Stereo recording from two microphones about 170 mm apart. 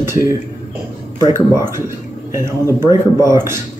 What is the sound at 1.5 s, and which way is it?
Speech, 15° right (ahead or behind).